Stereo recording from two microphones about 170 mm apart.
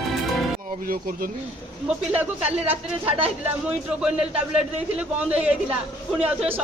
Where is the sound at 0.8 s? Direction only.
55° right (ahead or behind).